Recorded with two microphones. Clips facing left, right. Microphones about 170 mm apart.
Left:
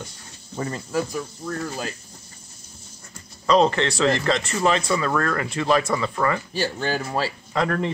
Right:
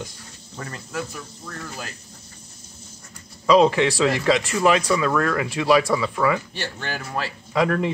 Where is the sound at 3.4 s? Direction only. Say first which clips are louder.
Right 2 dB; 10° right (ahead or behind).